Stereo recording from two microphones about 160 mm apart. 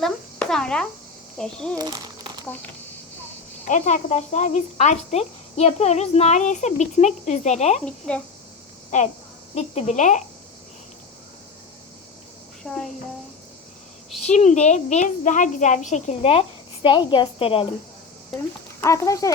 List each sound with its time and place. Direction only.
0.0 s insect: 5° left (ahead or behind)
1.4 s speech: 5° left (ahead or behind)
1.7 s speech: 25° right (ahead or behind)
3.7 s speech: 50° left (ahead or behind)
7.9 s speech: 5° left (ahead or behind)
8.9 s speech: 45° left (ahead or behind)
12.6 s speech: centre (ahead or behind)
14.3 s speech: 45° left (ahead or behind)
18.8 s speech: 20° left (ahead or behind)